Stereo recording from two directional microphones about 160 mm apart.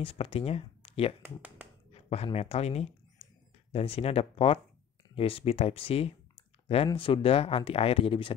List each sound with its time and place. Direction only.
0.0 s speech: 35° left (ahead or behind)
1.2 s speech: 10° right (ahead or behind)
1.9 s speech: 40° left (ahead or behind)